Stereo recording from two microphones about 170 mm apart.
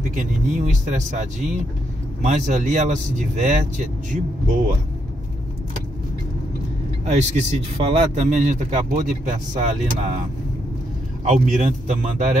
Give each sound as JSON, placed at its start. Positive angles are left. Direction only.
{"t": 0.1, "sound": "speech", "side_deg": -45}
{"t": 2.2, "sound": "speech", "side_deg": -45}
{"t": 7.1, "sound": "speech", "side_deg": -45}
{"t": 11.2, "sound": "speech", "side_deg": -45}